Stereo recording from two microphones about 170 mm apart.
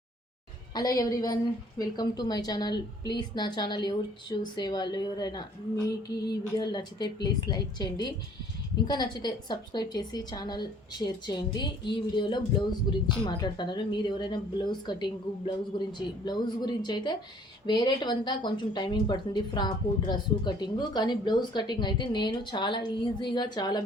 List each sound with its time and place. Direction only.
0.7 s speech: 20° left (ahead or behind)